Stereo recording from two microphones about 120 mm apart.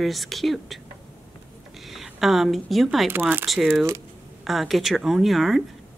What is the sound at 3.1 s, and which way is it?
Speech, 15° right (ahead or behind).